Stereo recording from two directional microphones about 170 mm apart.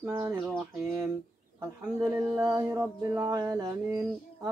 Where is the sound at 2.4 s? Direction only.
20° right (ahead or behind).